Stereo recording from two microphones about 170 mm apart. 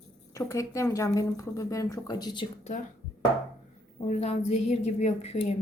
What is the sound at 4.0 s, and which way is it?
A woman's voice, 40° left (ahead or behind).